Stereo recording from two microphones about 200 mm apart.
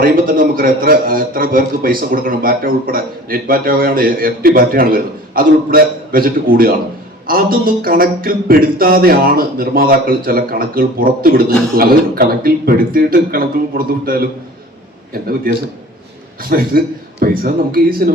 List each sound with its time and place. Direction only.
0.0 s a man's voice: 45° right (ahead or behind)
16.4 s a man's voice: 45° right (ahead or behind)